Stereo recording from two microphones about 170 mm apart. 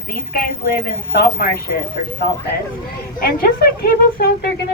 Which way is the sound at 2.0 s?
55° left (ahead or behind).